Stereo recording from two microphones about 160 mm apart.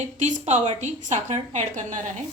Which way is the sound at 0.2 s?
45° right (ahead or behind).